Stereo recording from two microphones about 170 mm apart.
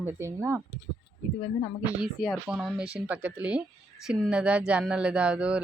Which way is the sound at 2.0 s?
Centre (ahead or behind).